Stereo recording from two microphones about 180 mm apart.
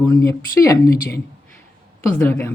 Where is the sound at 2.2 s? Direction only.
10° left (ahead or behind).